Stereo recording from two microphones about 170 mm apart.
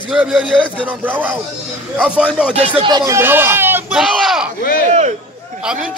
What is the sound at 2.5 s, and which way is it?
A man's voice, 25° right (ahead or behind).